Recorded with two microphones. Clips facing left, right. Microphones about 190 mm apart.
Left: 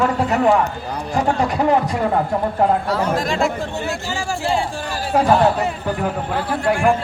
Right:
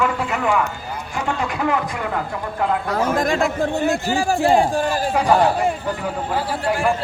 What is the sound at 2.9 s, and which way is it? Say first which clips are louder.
Speech: right 1 dB; 50° right (ahead or behind).